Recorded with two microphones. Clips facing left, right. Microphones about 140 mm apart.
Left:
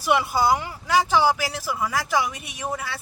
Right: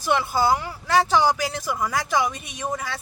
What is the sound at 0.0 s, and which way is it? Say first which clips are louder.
A woman's voice: left 1 dB; 10° left (ahead or behind).